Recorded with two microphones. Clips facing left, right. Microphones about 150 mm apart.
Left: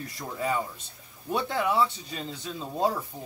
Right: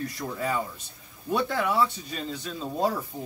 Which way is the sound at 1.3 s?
20° left (ahead or behind).